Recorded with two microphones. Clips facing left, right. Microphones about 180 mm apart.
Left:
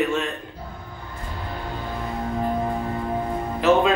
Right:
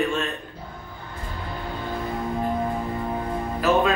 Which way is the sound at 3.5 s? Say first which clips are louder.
Left 3 dB; 20° left (ahead or behind).